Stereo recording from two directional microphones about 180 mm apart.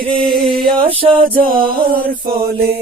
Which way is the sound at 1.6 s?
55° right (ahead or behind).